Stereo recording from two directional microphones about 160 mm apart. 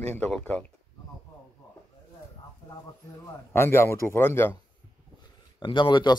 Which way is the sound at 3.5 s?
15° left (ahead or behind).